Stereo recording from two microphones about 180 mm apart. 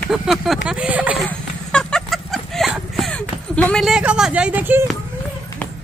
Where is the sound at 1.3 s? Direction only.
5° left (ahead or behind).